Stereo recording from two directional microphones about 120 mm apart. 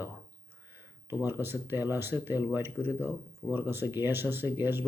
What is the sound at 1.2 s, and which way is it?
Speech, 20° right (ahead or behind).